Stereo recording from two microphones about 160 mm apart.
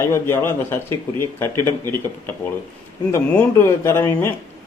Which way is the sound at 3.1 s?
15° left (ahead or behind).